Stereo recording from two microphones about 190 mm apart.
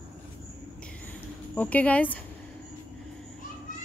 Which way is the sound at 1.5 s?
10° left (ahead or behind).